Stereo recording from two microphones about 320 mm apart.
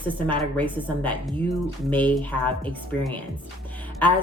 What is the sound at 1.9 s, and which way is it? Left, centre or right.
A woman's voice, centre.